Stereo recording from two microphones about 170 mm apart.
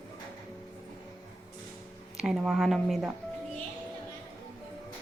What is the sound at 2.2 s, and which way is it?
Speech, centre (ahead or behind).